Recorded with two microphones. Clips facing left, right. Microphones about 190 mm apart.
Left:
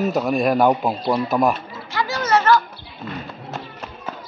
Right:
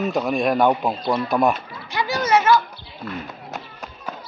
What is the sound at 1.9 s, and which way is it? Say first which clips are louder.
Children playing: even; 15° right (ahead or behind).